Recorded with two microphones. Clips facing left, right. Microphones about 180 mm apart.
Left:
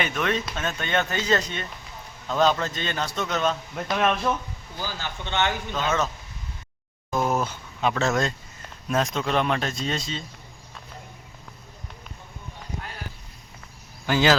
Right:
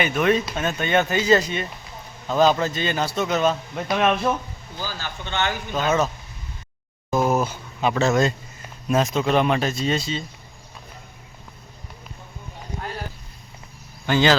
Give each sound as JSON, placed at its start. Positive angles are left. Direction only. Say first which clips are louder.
{"t": 0.0, "sound": "a man's voice", "louder": "right 6 dB", "side_deg": -10}
{"t": 4.8, "sound": "speech", "louder": "right 1 dB", "side_deg": 20}
{"t": 5.7, "sound": "a man's voice", "louder": "right 7 dB", "side_deg": -10}
{"t": 7.1, "sound": "a sound", "louder": "right 4 dB", "side_deg": -5}
{"t": 8.9, "sound": "speech", "louder": "right 4 dB", "side_deg": -5}
{"t": 14.1, "sound": "speech", "louder": "right 2 dB", "side_deg": 5}